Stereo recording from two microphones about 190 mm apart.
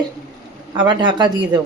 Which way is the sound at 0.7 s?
25° right (ahead or behind).